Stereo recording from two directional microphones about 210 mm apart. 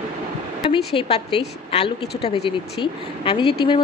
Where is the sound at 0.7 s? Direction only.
25° left (ahead or behind).